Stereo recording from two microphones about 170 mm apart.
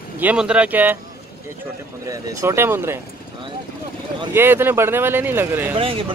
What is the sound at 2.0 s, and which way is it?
Speech, 15° right (ahead or behind).